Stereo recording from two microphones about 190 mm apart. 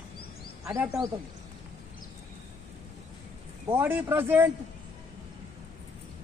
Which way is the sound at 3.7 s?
10° right (ahead or behind).